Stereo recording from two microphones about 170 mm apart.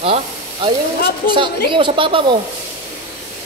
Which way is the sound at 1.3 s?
30° right (ahead or behind).